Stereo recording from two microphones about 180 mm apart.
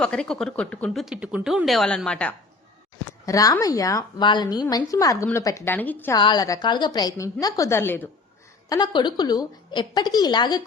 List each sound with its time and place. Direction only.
0.0 s speech: 5° left (ahead or behind)
3.2 s a woman's voice: 20° left (ahead or behind)
6.1 s a woman's voice: 25° left (ahead or behind)
8.7 s a woman's voice: 25° left (ahead or behind)